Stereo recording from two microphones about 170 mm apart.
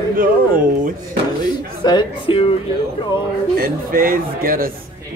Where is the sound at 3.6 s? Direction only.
55° right (ahead or behind).